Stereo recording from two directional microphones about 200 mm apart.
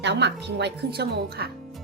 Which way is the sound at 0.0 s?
60° right (ahead or behind).